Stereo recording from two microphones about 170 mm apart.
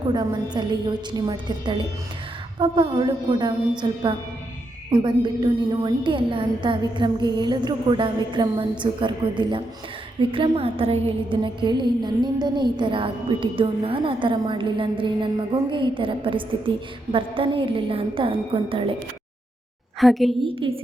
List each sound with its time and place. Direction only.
0.1 s a woman's voice: 25° right (ahead or behind)
20.0 s a woman's voice: centre (ahead or behind)
20.4 s a woman's voice: 30° right (ahead or behind)